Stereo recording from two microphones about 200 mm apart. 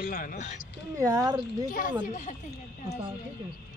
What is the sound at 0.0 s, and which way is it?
Speech, 45° left (ahead or behind).